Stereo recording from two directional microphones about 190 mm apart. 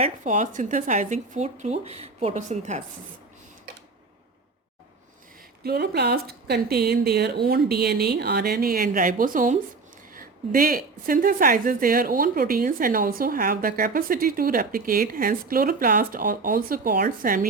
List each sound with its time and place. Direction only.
0.0 s speech: 40° right (ahead or behind)
5.6 s a woman's voice: 55° right (ahead or behind)